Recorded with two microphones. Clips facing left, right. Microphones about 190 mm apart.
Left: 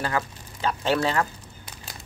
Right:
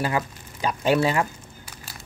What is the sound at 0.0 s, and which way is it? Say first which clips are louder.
Speech: right 2 dB; 15° right (ahead or behind).